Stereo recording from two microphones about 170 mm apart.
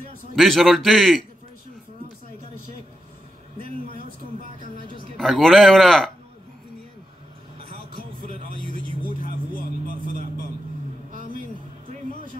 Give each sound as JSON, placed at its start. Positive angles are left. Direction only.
{"t": 0.4, "sound": "speech", "side_deg": 0}
{"t": 4.8, "sound": "a sound", "side_deg": -30}
{"t": 5.1, "sound": "speech", "side_deg": 0}
{"t": 9.8, "sound": "vehicle", "side_deg": -50}